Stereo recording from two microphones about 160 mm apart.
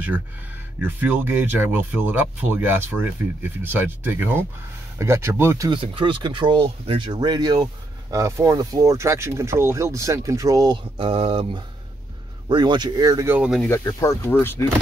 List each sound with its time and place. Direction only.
0.7 s speech: 10° right (ahead or behind)
5.7 s speech: 35° right (ahead or behind)
13.3 s speech: 5° right (ahead or behind)
13.7 s speech: 15° left (ahead or behind)